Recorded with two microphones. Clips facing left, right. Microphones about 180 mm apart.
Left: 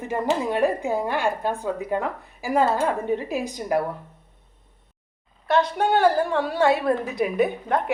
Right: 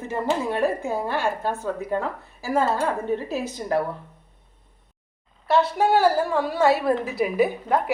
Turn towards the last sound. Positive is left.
turn(degrees=-5)  # may be behind; listen again after turning